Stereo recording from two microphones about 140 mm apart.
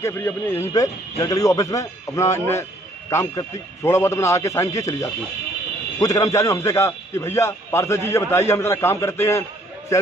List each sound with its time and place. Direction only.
0.0 s a man's voice: 15° left (ahead or behind)